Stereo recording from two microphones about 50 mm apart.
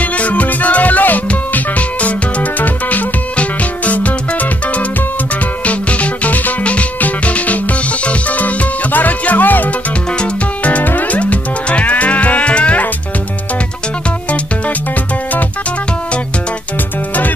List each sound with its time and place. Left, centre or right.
0.0 s music: left